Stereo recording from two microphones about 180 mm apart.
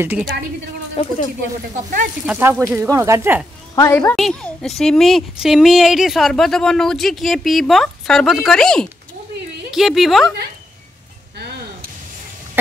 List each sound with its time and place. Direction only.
0.9 s speech: 40° left (ahead or behind)
2.2 s speech: 10° right (ahead or behind)
3.7 s a woman's voice: 15° left (ahead or behind)